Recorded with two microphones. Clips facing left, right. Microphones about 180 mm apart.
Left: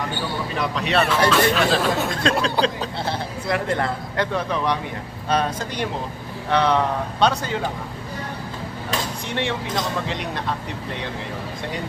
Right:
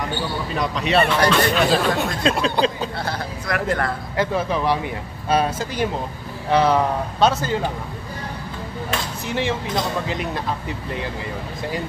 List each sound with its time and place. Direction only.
0.6 s speech: centre (ahead or behind)
3.1 s speech: 25° left (ahead or behind)
4.2 s speech: 5° right (ahead or behind)
9.3 s speech: centre (ahead or behind)